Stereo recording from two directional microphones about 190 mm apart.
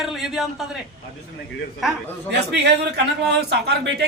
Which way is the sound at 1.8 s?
Centre (ahead or behind).